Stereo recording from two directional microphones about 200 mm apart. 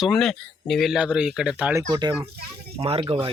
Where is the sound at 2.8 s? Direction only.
30° right (ahead or behind).